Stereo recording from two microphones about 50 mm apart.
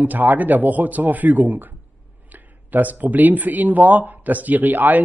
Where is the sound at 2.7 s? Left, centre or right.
Right.